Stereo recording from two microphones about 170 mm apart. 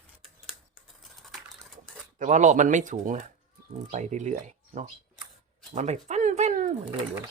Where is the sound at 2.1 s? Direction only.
45° right (ahead or behind).